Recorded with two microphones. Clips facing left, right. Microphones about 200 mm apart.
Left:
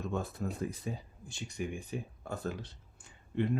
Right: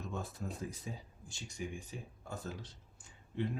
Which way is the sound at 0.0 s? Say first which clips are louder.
Left 6 dB; 60° left (ahead or behind).